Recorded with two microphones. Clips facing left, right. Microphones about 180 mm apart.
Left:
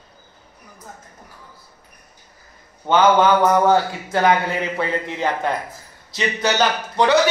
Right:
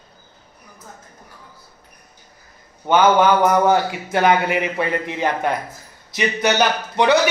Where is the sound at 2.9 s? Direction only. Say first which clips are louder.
Even; 15° right (ahead or behind).